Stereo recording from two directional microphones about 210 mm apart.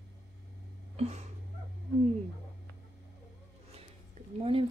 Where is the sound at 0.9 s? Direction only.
30° right (ahead or behind).